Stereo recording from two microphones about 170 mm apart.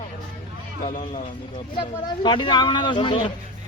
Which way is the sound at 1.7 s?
30° left (ahead or behind).